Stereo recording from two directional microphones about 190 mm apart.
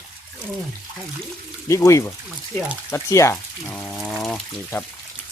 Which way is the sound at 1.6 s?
15° left (ahead or behind).